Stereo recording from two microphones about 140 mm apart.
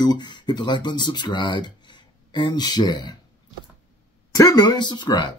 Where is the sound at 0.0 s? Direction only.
30° left (ahead or behind).